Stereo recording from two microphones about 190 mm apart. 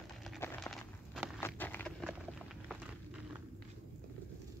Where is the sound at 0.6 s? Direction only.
Centre (ahead or behind).